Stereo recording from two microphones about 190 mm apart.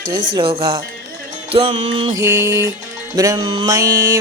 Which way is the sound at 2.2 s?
15° right (ahead or behind).